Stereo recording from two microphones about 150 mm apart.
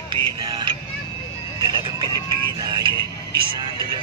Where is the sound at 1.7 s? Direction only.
30° right (ahead or behind).